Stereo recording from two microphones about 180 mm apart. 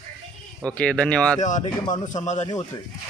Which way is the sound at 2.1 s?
40° left (ahead or behind).